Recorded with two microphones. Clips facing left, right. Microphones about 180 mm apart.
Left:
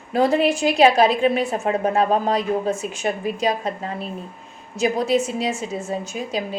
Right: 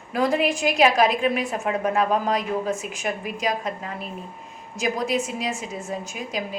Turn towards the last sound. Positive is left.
turn(degrees=30)  # may be behind; listen again after turning